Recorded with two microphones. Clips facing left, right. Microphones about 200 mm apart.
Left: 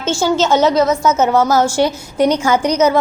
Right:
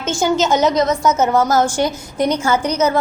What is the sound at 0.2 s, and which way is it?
Speech, 15° right (ahead or behind).